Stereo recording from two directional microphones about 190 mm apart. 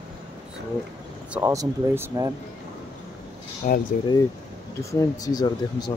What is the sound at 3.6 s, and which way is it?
Speech, 40° left (ahead or behind).